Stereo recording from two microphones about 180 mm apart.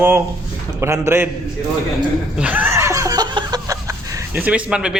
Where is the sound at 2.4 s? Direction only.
10° right (ahead or behind).